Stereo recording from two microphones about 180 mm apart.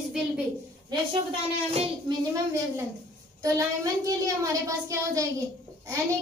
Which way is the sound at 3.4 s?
20° right (ahead or behind).